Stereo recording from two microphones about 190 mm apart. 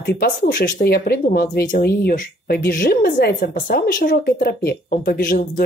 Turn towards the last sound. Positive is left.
turn(degrees=45)  # may be behind; listen again after turning